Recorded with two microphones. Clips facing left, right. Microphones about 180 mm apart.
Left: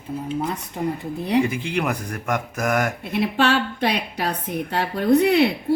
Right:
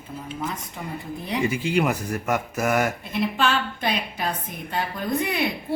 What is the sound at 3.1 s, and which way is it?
A woman's voice, 65° left (ahead or behind).